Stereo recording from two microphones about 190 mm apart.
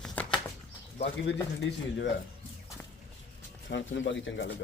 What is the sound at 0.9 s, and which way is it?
Speech, 60° left (ahead or behind).